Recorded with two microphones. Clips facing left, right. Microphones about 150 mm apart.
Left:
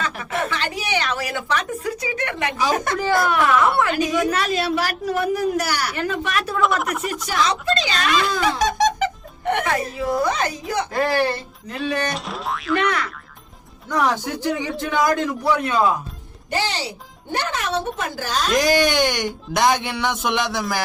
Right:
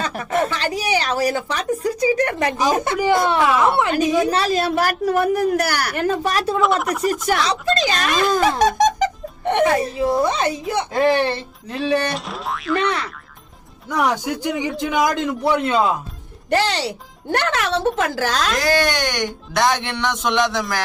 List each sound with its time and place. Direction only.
0.0 s a woman's voice: 40° right (ahead or behind)
2.6 s a woman's voice: 20° right (ahead or behind); by 6.1 s 55° right (ahead or behind)
6.1 s speech: 35° right (ahead or behind)
6.6 s boing: centre (ahead or behind)
7.4 s speech: 35° right (ahead or behind)
9.4 s speech: 25° right (ahead or behind)
12.1 s boing: centre (ahead or behind)
13.9 s a man's voice: 10° right (ahead or behind)
16.5 s speech: 65° right (ahead or behind)
17.3 s speech: 80° right
18.5 s speech: 15° left (ahead or behind)